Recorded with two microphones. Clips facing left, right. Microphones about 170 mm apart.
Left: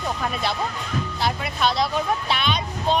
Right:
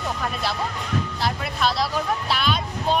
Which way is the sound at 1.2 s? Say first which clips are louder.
Left 3 dB; centre (ahead or behind).